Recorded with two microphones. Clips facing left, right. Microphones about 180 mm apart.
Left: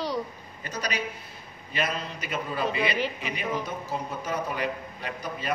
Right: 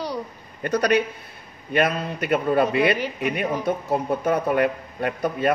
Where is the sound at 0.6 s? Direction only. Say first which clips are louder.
Right 12 dB; 60° right (ahead or behind).